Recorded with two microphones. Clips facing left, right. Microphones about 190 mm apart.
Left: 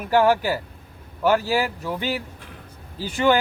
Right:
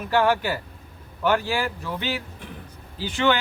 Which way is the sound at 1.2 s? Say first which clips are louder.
Left 3 dB; 5° left (ahead or behind).